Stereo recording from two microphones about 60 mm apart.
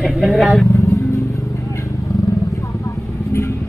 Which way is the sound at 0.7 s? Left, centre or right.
Left.